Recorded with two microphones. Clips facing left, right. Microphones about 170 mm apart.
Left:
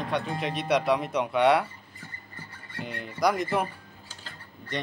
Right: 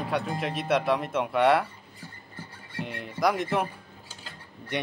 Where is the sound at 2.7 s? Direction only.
Centre (ahead or behind).